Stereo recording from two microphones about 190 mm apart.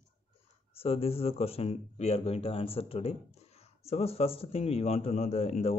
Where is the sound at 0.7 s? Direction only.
30° left (ahead or behind).